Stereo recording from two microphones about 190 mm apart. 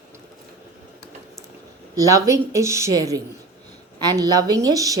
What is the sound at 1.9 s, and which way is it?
A woman's voice, 15° right (ahead or behind).